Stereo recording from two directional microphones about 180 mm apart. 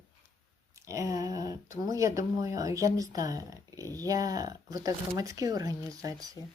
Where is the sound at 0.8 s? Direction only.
20° right (ahead or behind).